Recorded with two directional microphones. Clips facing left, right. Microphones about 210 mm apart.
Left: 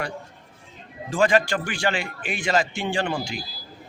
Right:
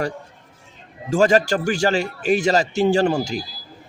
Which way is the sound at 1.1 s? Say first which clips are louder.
Right 4 dB; 40° right (ahead or behind).